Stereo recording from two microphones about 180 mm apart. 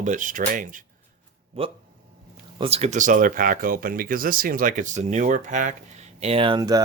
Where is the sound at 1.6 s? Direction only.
35° right (ahead or behind).